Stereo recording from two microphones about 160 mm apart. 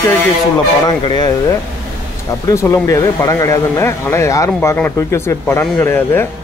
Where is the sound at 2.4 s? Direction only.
20° left (ahead or behind).